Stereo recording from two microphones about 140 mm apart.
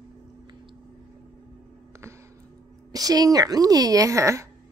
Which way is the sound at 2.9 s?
25° right (ahead or behind).